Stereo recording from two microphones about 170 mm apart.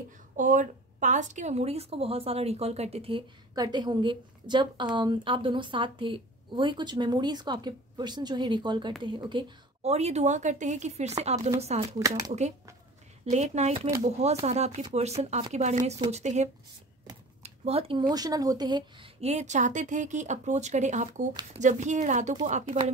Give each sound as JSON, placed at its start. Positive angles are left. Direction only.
{"t": 0.4, "sound": "a woman's voice", "side_deg": -50}
{"t": 9.9, "sound": "a woman's voice", "side_deg": -40}
{"t": 19.2, "sound": "speech", "side_deg": -45}